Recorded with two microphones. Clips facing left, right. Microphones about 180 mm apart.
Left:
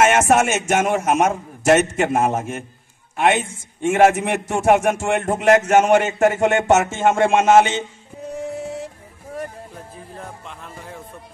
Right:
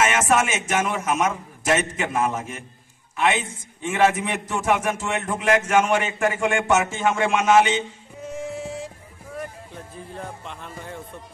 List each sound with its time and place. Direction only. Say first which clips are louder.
0.0 s a man's voice: left 5 dB; 50° left (ahead or behind)
9.9 s speech: right 3 dB; centre (ahead or behind)